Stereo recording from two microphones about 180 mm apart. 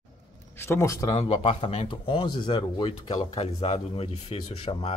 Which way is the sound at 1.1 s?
30° left (ahead or behind).